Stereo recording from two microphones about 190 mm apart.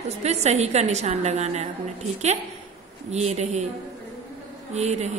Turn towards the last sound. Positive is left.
turn(degrees=-35)  # may be behind; listen again after turning